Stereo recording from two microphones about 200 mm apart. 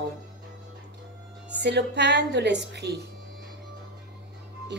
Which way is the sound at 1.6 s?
60° right (ahead or behind).